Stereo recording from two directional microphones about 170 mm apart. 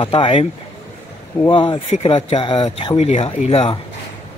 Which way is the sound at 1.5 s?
30° left (ahead or behind).